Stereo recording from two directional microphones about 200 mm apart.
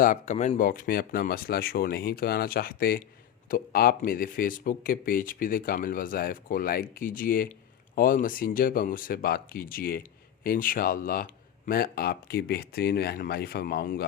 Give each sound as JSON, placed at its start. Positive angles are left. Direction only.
{"t": 0.0, "sound": "speech", "side_deg": 40}